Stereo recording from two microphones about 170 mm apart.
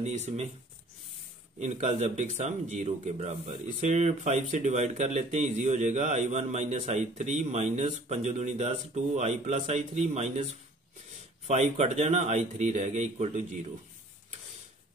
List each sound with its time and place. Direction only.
0.0 s speech: 40° right (ahead or behind)
1.6 s speech: 40° right (ahead or behind)